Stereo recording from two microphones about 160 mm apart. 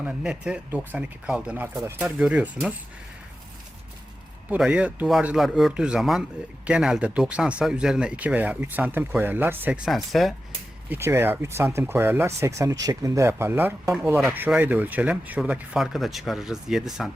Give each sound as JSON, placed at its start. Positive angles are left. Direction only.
{"t": 0.0, "sound": "speech", "side_deg": -5}
{"t": 4.4, "sound": "speech", "side_deg": -10}
{"t": 10.8, "sound": "speech", "side_deg": -15}